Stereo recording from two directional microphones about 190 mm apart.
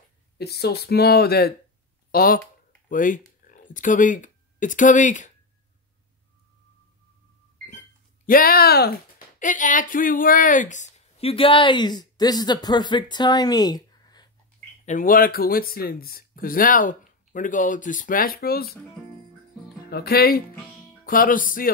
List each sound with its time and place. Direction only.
0.4 s speech: 55° left (ahead or behind); by 5.3 s 40° left (ahead or behind)
8.3 s speech: 50° left (ahead or behind)
9.4 s speech: 45° left (ahead or behind); by 14.2 s 20° left (ahead or behind)
14.9 s speech: 45° left (ahead or behind)
19.9 s speech: 55° left (ahead or behind)